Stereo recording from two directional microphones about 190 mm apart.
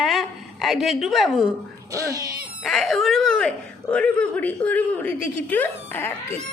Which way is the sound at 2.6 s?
Centre (ahead or behind).